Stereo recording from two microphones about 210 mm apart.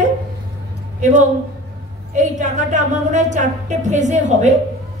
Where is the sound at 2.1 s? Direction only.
35° right (ahead or behind).